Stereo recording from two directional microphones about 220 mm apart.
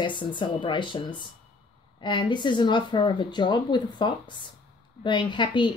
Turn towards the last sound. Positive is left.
turn(degrees=20)  # may be behind; listen again after turning